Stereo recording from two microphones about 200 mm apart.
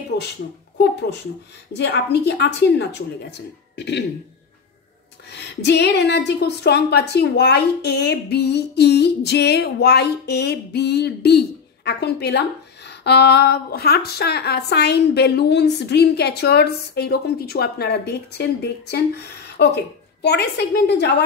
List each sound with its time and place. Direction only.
1.7 s a woman's voice: 55° left (ahead or behind)
5.3 s a woman's voice: 55° left (ahead or behind)